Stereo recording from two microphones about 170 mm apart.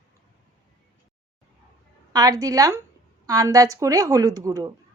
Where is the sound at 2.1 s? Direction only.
20° right (ahead or behind).